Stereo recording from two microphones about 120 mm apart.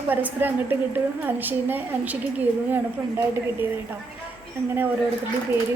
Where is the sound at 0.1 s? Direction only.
15° right (ahead or behind).